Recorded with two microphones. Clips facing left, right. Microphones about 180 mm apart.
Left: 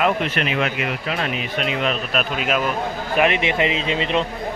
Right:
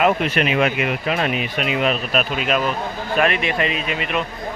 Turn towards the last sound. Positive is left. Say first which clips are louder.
# left 3 dB
turn(degrees=25)  # may be behind; listen again after turning